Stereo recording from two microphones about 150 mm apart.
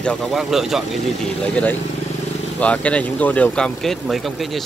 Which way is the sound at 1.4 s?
10° left (ahead or behind).